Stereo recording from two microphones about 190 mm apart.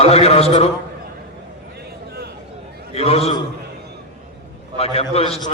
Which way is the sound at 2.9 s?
30° left (ahead or behind).